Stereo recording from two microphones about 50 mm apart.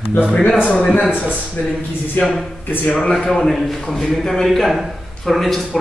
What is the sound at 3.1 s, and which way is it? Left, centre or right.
A man's voice, centre.